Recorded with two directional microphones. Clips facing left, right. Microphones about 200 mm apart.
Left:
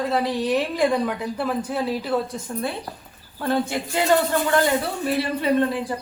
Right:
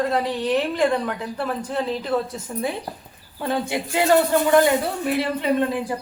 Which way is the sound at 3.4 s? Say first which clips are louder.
Left 1 dB; 15° right (ahead or behind).